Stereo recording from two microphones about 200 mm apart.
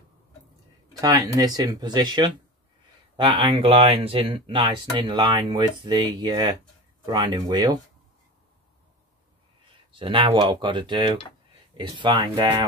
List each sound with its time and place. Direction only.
1.0 s speech: 15° right (ahead or behind)
9.9 s speech: 25° right (ahead or behind)